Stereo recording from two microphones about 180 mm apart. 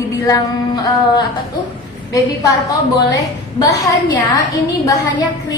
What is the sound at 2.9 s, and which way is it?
A woman's voice, 20° left (ahead or behind).